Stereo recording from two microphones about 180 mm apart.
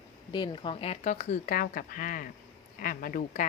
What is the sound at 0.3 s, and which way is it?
Speech, 25° left (ahead or behind).